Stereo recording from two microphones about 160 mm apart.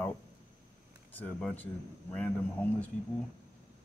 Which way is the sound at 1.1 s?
10° left (ahead or behind).